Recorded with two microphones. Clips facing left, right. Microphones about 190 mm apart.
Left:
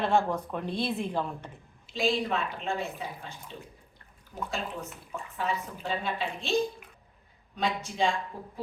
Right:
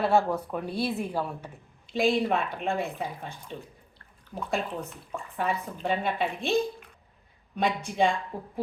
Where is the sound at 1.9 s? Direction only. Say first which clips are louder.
Right 4 dB; 55° right (ahead or behind).